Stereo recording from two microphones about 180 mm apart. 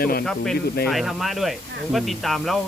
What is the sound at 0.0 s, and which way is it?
Speech, 55° left (ahead or behind).